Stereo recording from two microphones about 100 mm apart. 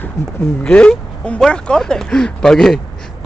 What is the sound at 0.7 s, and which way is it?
Speech, 10° left (ahead or behind).